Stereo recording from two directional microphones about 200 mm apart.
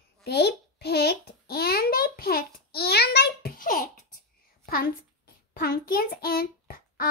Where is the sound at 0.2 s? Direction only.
55° left (ahead or behind).